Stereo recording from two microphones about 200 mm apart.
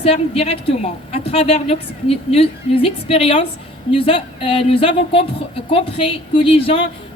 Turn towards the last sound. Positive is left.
turn(degrees=25)  # may be behind; listen again after turning